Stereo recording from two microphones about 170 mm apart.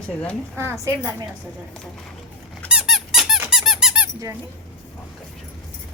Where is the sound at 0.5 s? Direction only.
15° right (ahead or behind).